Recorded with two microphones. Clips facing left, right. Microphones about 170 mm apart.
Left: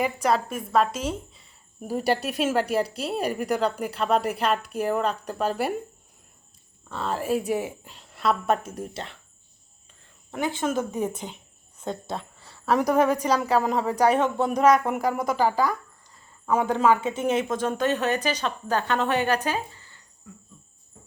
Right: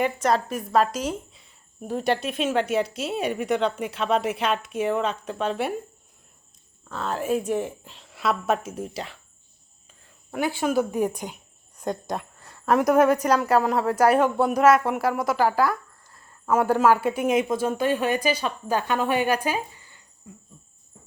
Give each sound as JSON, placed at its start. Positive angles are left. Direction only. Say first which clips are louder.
{"t": 0.0, "sound": "a woman's voice", "louder": "right 1 dB", "side_deg": 0}
{"t": 6.8, "sound": "a woman's voice", "louder": "right 1 dB", "side_deg": 0}
{"t": 10.6, "sound": "a woman's voice", "louder": "right 4 dB", "side_deg": -10}
{"t": 20.3, "sound": "cricket", "louder": "right 1 dB", "side_deg": -20}